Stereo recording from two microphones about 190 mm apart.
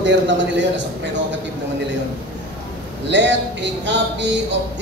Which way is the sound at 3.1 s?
70° right (ahead or behind).